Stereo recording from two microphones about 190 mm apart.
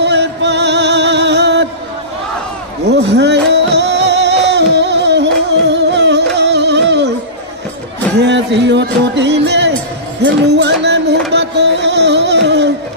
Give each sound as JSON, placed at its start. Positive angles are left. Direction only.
{"t": 0.0, "sound": "music", "side_deg": -65}
{"t": 2.9, "sound": "music", "side_deg": -65}
{"t": 8.2, "sound": "music", "side_deg": -65}